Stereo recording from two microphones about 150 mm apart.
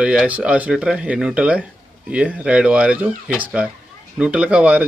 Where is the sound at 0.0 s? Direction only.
5° right (ahead or behind).